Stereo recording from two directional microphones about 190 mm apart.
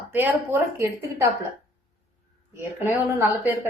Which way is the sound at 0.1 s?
10° right (ahead or behind).